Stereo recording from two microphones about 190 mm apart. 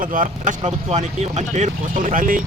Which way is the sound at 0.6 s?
35° right (ahead or behind).